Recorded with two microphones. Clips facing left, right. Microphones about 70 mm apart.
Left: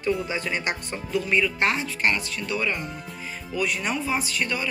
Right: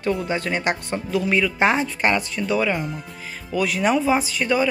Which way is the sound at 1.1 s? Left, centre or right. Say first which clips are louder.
Right 2 dB; right.